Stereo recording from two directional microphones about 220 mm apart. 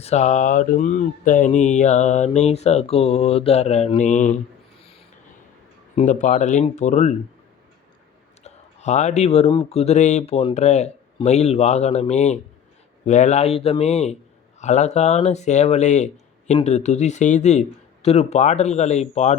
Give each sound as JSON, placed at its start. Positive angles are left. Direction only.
{"t": 0.0, "sound": "speech", "side_deg": 30}
{"t": 6.0, "sound": "speech", "side_deg": 35}
{"t": 8.4, "sound": "speech", "side_deg": 30}